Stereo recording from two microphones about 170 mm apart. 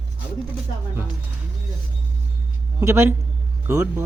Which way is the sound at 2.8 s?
15° right (ahead or behind).